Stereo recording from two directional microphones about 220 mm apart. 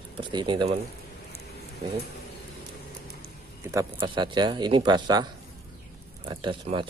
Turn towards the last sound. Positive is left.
turn(degrees=-20)  # may be behind; listen again after turning